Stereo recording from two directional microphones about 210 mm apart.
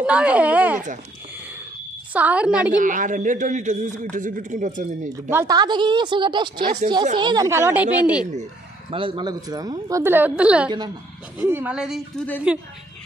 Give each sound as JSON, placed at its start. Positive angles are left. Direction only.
{"t": 0.0, "sound": "a woman's voice", "side_deg": -5}
{"t": 2.1, "sound": "a woman's voice", "side_deg": -5}
{"t": 2.8, "sound": "a man's voice", "side_deg": -40}
{"t": 5.3, "sound": "a woman's voice", "side_deg": -15}
{"t": 8.9, "sound": "a woman's voice", "side_deg": -25}